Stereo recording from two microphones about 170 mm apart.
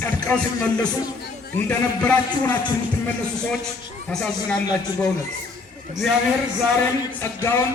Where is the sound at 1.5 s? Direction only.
10° left (ahead or behind).